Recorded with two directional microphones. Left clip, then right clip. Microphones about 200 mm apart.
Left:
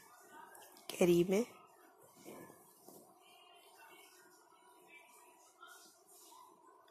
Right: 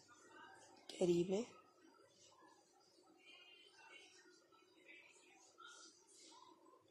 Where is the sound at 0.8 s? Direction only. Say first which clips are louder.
Left 7 dB; 25° left (ahead or behind).